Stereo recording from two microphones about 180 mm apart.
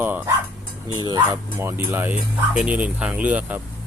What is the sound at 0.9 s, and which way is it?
Speech, 25° right (ahead or behind).